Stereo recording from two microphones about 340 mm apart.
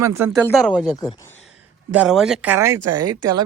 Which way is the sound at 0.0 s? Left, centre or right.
Centre.